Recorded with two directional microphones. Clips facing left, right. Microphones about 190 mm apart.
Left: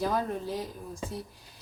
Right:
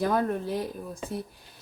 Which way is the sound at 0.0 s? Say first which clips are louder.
Right 4 dB; 55° right (ahead or behind).